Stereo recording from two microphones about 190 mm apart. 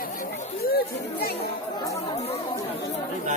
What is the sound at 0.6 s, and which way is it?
Speech, 55° left (ahead or behind).